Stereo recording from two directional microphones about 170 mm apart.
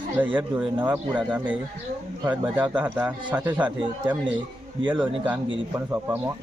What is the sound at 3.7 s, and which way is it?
Speech, 30° right (ahead or behind).